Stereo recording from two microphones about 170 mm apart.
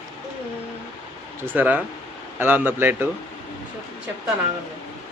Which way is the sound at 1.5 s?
10° right (ahead or behind).